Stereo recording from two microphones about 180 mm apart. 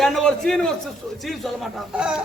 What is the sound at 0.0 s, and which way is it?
A man's voice, 5° left (ahead or behind).